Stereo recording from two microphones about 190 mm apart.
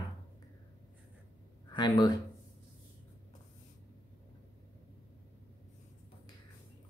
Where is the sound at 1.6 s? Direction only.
20° left (ahead or behind).